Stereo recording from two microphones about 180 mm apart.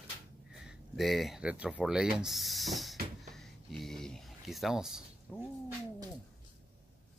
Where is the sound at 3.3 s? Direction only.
Centre (ahead or behind).